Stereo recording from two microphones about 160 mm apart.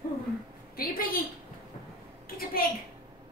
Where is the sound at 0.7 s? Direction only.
65° left (ahead or behind).